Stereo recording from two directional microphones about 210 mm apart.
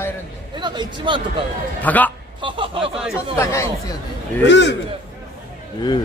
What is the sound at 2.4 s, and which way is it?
Speech, 25° right (ahead or behind).